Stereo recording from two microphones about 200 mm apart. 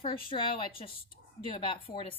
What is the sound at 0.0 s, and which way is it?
A woman's voice, 25° left (ahead or behind).